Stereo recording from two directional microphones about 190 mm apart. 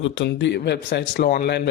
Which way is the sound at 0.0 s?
75° left (ahead or behind).